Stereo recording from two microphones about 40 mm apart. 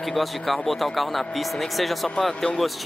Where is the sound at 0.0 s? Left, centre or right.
Centre.